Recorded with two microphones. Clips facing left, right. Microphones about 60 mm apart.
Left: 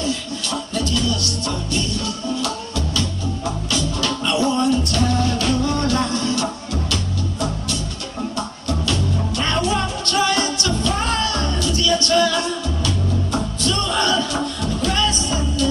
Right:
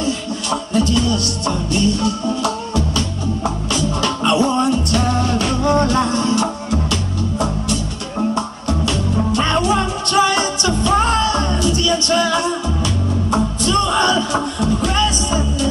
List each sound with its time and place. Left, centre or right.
0.5 s music: right
4.0 s music: right
8.6 s music: right